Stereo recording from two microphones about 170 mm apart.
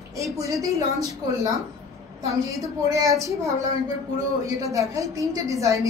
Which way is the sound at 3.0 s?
20° right (ahead or behind).